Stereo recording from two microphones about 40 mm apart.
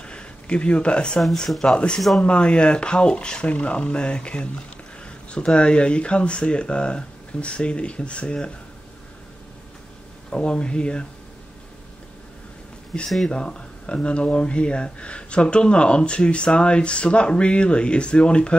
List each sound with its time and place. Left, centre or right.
0.0 s a sound: left
1.6 s speech: left
2.0 s speech: centre
2.2 s speech: left
10.3 s speech: left
12.9 s speech: centre
13.3 s speech: left